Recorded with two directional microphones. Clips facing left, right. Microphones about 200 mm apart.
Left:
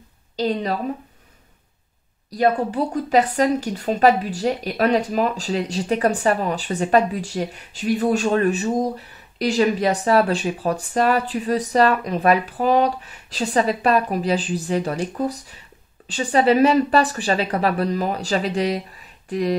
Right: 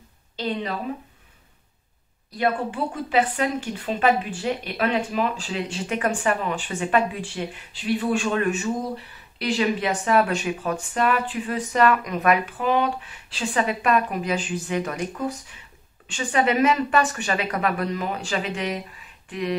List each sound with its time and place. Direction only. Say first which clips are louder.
0.4 s a woman's voice: left 5 dB; 40° left (ahead or behind)
2.3 s a woman's voice: left 5 dB; 40° left (ahead or behind)